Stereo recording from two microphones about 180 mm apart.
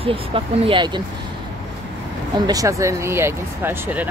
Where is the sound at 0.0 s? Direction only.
30° right (ahead or behind).